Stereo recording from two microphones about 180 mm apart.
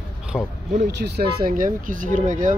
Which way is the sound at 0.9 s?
65° right (ahead or behind).